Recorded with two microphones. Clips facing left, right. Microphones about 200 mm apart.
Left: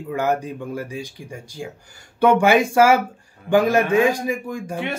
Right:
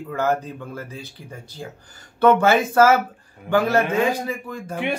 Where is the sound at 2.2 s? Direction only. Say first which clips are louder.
Left 1 dB; 15° left (ahead or behind).